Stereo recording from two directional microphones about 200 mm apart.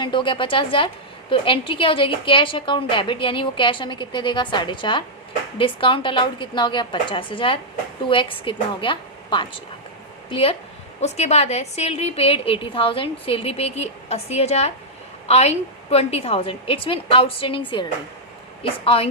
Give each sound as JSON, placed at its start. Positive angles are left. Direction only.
{"t": 0.0, "sound": "a woman's voice", "side_deg": 25}